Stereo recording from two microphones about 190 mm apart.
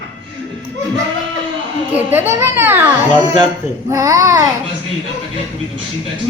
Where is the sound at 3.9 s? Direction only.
15° right (ahead or behind).